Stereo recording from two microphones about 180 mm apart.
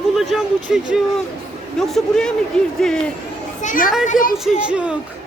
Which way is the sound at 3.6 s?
45° left (ahead or behind).